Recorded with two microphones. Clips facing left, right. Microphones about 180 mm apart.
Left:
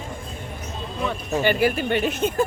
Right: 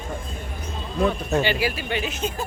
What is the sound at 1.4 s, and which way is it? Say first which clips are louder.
Speech: left 5 dB; 50° left (ahead or behind).